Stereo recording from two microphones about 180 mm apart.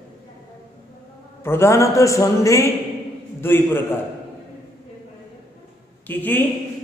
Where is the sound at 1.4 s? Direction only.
15° left (ahead or behind).